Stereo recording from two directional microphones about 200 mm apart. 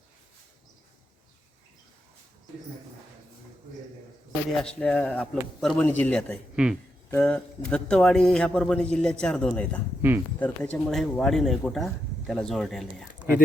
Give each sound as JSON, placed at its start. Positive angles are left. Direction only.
{"t": 4.4, "sound": "a man's voice", "side_deg": 0}